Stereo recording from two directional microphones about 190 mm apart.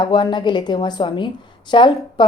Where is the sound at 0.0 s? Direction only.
25° left (ahead or behind).